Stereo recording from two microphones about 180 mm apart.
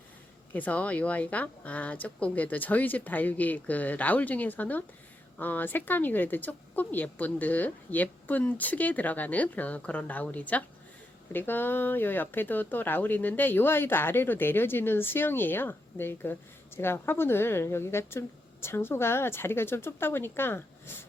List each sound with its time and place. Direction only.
0.5 s speech: 10° left (ahead or behind)